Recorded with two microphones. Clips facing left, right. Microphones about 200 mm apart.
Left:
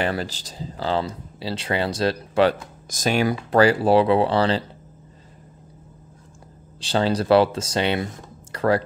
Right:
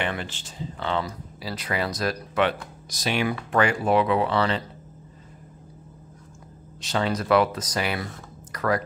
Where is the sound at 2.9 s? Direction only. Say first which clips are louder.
Left 5 dB; 45° left (ahead or behind).